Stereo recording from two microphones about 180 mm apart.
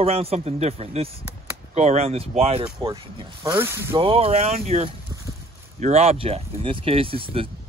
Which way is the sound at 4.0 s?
30° right (ahead or behind).